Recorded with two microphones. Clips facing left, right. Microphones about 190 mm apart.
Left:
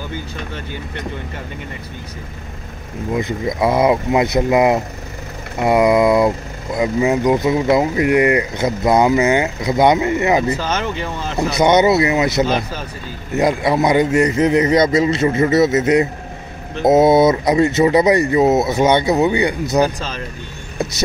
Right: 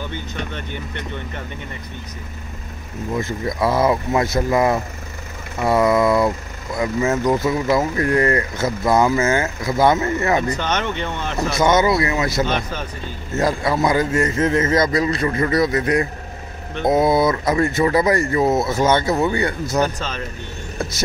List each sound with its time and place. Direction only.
3.1 s a man's voice: 15° left (ahead or behind)
10.5 s speech: 5° left (ahead or behind)
11.5 s a man's voice: 20° left (ahead or behind)
12.4 s a man's voice: 10° left (ahead or behind)